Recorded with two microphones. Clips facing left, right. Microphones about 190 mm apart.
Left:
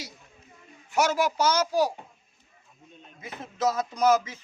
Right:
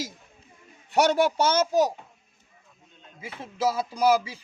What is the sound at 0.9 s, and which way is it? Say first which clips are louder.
Speech: right 3 dB; 30° right (ahead or behind).